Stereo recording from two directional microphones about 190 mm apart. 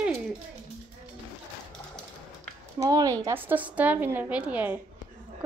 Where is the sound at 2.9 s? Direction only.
20° right (ahead or behind).